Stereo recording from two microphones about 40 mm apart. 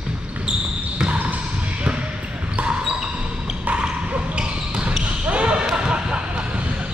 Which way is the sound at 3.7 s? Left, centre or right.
Right.